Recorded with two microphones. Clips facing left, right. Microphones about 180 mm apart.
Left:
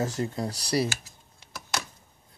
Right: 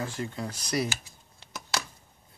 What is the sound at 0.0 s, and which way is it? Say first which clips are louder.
Speech: left 5 dB; 40° left (ahead or behind).